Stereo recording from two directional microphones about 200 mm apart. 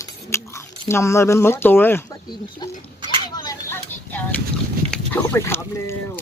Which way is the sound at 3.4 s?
15° left (ahead or behind).